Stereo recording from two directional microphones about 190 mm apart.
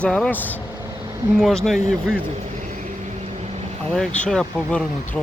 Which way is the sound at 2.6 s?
40° right (ahead or behind).